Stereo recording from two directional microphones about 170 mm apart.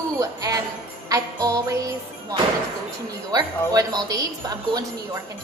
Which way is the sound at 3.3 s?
20° right (ahead or behind).